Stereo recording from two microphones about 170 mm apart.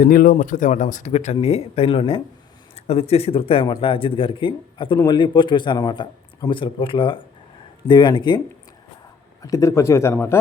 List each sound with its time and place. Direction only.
0.0 s speech: 60° left (ahead or behind); by 8.4 s 25° left (ahead or behind)
9.4 s speech: 20° left (ahead or behind)